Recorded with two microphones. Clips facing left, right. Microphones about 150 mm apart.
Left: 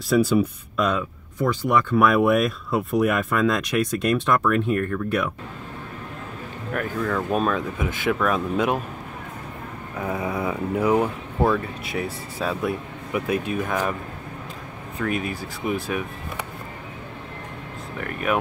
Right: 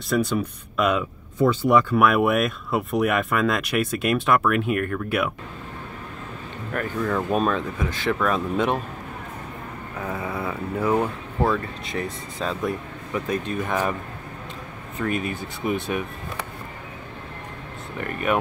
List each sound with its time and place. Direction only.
0.1 s speech: 5° left (ahead or behind)
1.5 s speech: 15° right (ahead or behind)
2.0 s speech: 5° right (ahead or behind)
6.7 s speech: centre (ahead or behind)
9.9 s speech: 10° left (ahead or behind)
15.0 s speech: centre (ahead or behind)
17.9 s speech: centre (ahead or behind)